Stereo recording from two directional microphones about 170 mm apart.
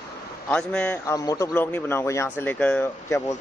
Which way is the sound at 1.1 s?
20° left (ahead or behind).